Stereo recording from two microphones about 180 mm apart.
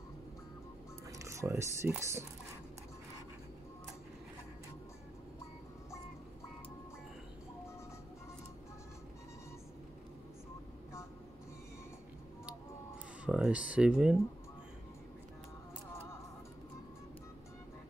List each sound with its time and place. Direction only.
1.1 s speech: 15° right (ahead or behind)
13.2 s speech: 5° right (ahead or behind)